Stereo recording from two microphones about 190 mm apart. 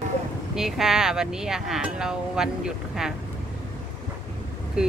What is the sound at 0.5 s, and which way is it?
Speech, centre (ahead or behind).